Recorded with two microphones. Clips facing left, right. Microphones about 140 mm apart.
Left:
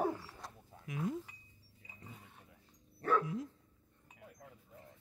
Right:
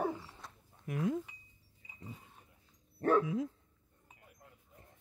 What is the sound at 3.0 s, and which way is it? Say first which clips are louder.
Dog: right 4 dB; 50° right (ahead or behind).